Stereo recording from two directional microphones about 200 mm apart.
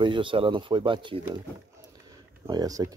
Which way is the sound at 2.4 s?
20° right (ahead or behind).